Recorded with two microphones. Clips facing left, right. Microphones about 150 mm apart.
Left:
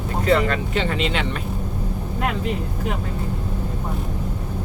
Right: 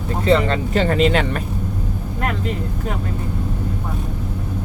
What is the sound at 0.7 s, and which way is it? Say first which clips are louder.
Speech: right 6 dB; 45° right (ahead or behind).